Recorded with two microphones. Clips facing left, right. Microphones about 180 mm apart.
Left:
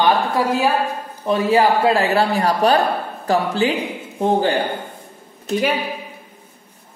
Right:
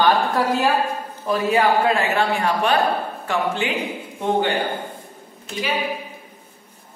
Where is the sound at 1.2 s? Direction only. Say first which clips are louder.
Left 3 dB; 25° left (ahead or behind).